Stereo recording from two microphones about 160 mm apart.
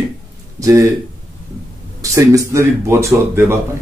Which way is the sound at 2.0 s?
20° right (ahead or behind).